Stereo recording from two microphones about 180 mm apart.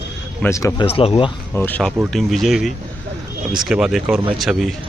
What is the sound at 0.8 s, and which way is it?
Speech, 30° left (ahead or behind).